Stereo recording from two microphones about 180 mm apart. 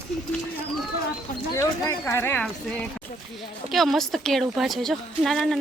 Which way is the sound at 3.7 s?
Centre (ahead or behind).